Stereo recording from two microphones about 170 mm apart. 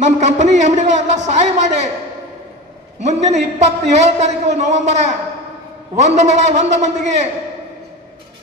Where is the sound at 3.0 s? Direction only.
40° right (ahead or behind).